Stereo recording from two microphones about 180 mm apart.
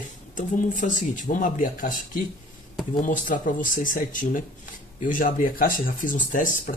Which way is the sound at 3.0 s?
45° left (ahead or behind).